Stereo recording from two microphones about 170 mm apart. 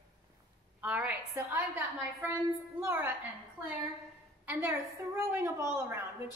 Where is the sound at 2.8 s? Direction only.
15° right (ahead or behind).